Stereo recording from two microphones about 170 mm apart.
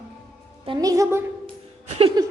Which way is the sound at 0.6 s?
20° right (ahead or behind).